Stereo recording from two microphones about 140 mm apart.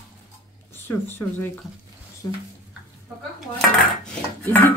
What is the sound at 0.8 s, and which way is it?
Speech, 15° left (ahead or behind).